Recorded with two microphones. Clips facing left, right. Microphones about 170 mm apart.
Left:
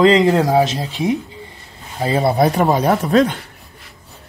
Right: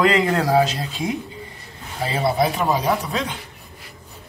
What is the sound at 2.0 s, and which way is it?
Speech, 40° left (ahead or behind).